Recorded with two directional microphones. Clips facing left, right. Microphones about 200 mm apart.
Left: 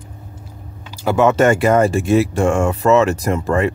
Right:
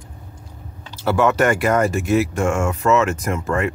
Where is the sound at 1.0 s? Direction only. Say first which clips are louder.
Left 3 dB; 15° left (ahead or behind).